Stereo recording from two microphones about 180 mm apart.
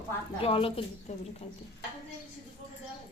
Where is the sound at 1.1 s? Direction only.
40° left (ahead or behind).